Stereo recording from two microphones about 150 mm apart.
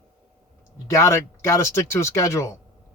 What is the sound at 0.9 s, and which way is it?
Speech, 20° left (ahead or behind).